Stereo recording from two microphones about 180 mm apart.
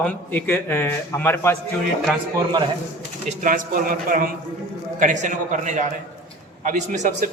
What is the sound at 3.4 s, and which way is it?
A man's voice, 50° right (ahead or behind).